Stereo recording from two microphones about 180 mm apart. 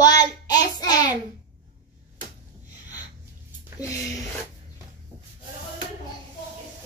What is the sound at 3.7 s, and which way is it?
Speech, 20° left (ahead or behind).